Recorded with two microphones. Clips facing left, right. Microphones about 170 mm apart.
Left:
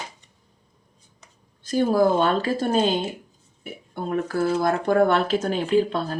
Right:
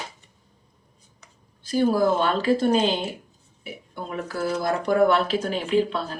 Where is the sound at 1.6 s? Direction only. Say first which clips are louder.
Left 1 dB; 50° left (ahead or behind).